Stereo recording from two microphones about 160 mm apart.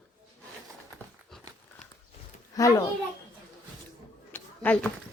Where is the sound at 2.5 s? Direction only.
20° left (ahead or behind).